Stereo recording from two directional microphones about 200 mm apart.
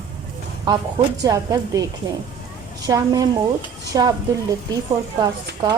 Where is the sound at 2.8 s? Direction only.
20° right (ahead or behind).